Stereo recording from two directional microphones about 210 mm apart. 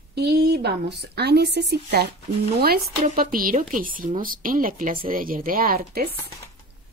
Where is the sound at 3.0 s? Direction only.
40° right (ahead or behind).